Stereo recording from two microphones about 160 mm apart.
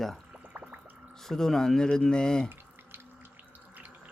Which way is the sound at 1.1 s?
5° left (ahead or behind).